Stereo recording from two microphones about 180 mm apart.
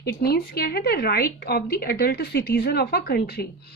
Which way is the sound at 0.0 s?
60° left (ahead or behind).